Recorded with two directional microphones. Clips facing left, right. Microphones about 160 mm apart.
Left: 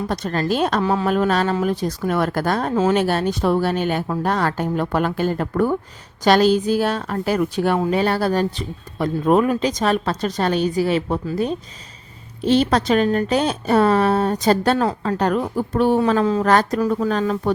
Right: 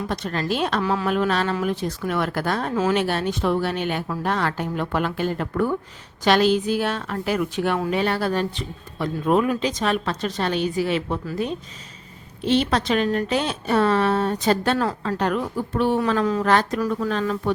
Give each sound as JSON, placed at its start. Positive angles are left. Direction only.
{"t": 0.1, "sound": "speech", "side_deg": 40}
{"t": 0.8, "sound": "a woman's voice", "side_deg": 25}
{"t": 1.0, "sound": "speech", "side_deg": 40}
{"t": 12.4, "sound": "speech", "side_deg": 40}
{"t": 16.0, "sound": "speech", "side_deg": 30}
{"t": 16.4, "sound": "speech", "side_deg": 40}